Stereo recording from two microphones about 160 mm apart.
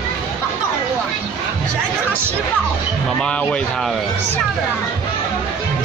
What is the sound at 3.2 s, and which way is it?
Speech, 5° left (ahead or behind).